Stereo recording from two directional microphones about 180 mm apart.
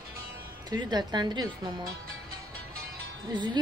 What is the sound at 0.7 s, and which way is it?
Speech, 25° right (ahead or behind).